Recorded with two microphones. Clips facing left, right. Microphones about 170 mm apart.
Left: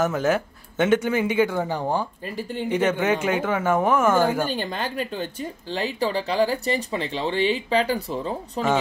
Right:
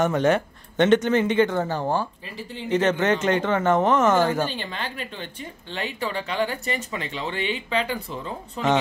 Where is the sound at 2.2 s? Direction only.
50° left (ahead or behind).